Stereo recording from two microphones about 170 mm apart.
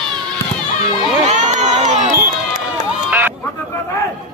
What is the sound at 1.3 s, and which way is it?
Crowd, 45° right (ahead or behind).